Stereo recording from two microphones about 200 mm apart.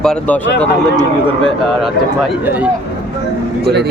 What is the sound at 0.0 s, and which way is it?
Speech, 5° left (ahead or behind).